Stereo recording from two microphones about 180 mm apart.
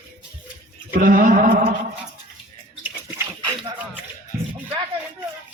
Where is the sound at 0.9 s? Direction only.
50° right (ahead or behind).